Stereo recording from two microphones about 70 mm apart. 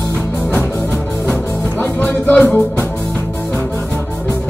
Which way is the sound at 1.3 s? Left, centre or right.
Centre.